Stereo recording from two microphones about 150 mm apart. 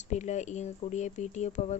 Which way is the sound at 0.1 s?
50° left (ahead or behind).